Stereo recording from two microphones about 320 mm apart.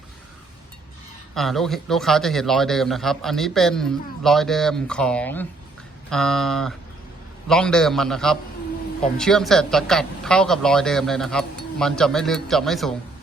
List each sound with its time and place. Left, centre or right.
1.4 s a man's voice: centre